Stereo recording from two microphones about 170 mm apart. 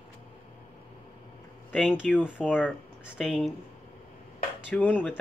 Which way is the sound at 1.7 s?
5° right (ahead or behind).